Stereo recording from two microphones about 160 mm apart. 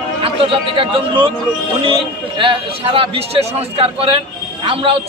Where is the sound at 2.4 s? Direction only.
35° right (ahead or behind).